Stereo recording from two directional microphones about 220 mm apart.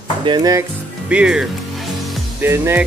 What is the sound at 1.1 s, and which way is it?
Music, 5° right (ahead or behind).